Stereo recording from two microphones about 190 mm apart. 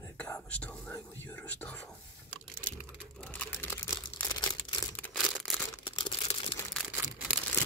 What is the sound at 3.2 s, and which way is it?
Crumpling, 5° left (ahead or behind).